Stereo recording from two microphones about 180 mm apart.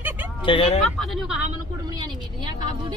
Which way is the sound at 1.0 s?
Centre (ahead or behind).